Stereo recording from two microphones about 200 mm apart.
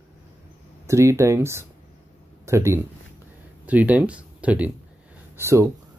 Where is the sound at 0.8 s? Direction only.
15° right (ahead or behind).